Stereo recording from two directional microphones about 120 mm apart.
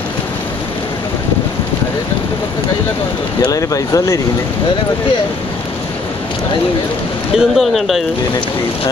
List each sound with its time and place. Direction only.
3.4 s speech: 30° left (ahead or behind)
7.3 s speech: centre (ahead or behind)